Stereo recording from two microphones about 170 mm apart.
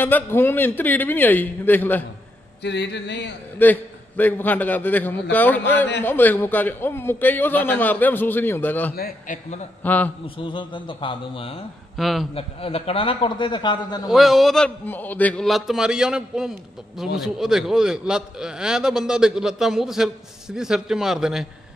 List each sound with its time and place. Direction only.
0.0 s a man's voice: 10° left (ahead or behind)
2.6 s a sound: 90° left
3.5 s a man's voice: 10° left (ahead or behind)
8.9 s a man's voice: 60° left (ahead or behind)
9.8 s a man's voice: 10° left (ahead or behind)
10.2 s a man's voice: 30° left (ahead or behind)
12.0 s a man's voice: centre (ahead or behind)
12.4 s a man's voice: 35° left (ahead or behind)
14.0 s a man's voice: centre (ahead or behind)